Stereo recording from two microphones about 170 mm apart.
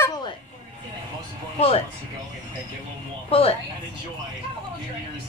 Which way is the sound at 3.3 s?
35° left (ahead or behind).